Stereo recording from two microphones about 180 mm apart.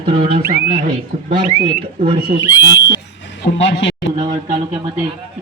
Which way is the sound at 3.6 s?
85° left.